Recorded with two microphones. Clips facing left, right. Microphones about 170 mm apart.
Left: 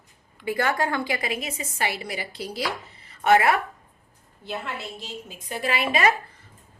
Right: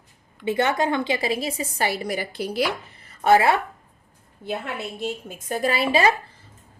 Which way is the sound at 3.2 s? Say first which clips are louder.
Right 2 dB; 30° right (ahead or behind).